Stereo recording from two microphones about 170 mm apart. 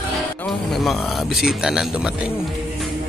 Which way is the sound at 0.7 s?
Centre (ahead or behind).